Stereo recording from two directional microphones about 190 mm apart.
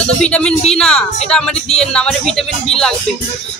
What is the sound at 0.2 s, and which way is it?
Speech, 5° left (ahead or behind).